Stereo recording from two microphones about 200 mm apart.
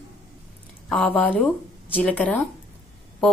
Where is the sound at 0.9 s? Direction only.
5° left (ahead or behind).